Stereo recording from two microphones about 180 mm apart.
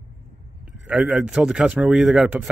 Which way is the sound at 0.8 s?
5° right (ahead or behind).